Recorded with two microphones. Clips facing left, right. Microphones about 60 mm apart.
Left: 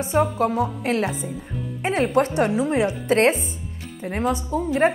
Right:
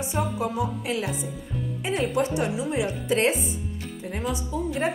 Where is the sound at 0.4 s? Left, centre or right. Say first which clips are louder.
Left 5 dB; left.